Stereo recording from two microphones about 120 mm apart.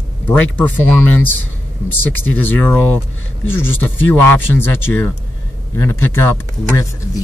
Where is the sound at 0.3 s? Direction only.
15° left (ahead or behind).